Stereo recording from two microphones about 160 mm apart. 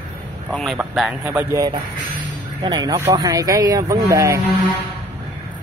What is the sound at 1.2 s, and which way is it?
Speech, 20° right (ahead or behind).